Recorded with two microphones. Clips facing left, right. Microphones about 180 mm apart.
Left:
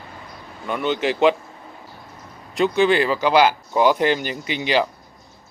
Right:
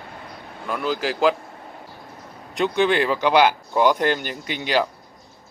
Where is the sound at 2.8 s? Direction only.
5° left (ahead or behind).